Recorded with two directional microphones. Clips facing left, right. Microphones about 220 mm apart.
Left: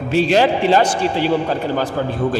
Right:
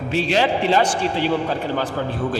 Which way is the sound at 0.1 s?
45° left (ahead or behind).